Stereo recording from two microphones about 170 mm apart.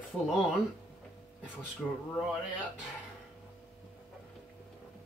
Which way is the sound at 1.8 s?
Centre (ahead or behind).